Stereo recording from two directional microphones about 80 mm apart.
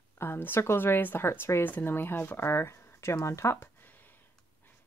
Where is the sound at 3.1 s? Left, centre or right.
Left.